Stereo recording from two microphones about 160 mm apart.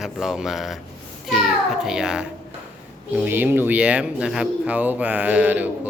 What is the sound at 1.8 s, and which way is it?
Speech, 5° right (ahead or behind).